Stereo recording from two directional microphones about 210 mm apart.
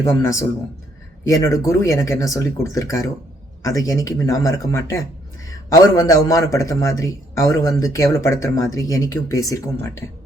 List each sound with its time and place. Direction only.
0.0 s a man's voice: 15° left (ahead or behind)